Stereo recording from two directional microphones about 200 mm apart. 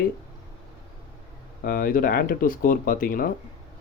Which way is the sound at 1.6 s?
45° left (ahead or behind).